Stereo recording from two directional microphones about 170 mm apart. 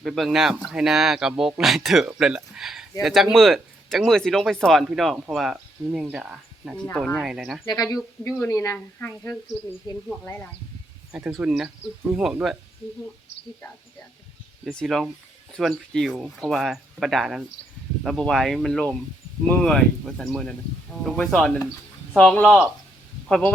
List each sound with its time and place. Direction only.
0.0 s speech: centre (ahead or behind)
7.7 s a woman's voice: 20° left (ahead or behind)
9.9 s speech: 25° left (ahead or behind)
10.2 s a woman's voice: 15° left (ahead or behind)
11.1 s speech: 15° right (ahead or behind)
11.3 s speech: centre (ahead or behind)
14.6 s speech: 5° left (ahead or behind)